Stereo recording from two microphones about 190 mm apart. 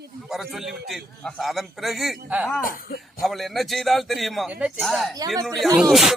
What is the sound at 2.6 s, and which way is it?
Speech, 50° left (ahead or behind).